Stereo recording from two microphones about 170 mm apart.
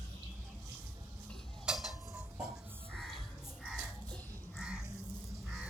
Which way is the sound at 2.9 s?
5° left (ahead or behind).